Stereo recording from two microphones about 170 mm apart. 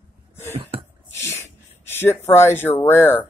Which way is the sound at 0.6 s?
35° right (ahead or behind).